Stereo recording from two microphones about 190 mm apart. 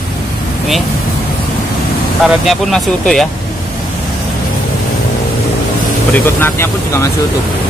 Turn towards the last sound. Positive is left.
turn(degrees=15)  # may be behind; listen again after turning